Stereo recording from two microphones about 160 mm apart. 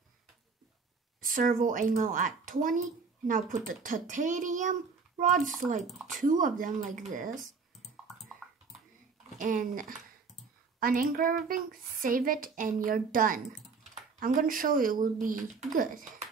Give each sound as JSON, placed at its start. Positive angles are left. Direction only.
{"t": 1.2, "sound": "speech", "side_deg": -60}
{"t": 9.4, "sound": "speech", "side_deg": -55}